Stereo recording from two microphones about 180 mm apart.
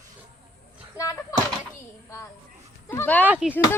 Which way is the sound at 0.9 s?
20° left (ahead or behind).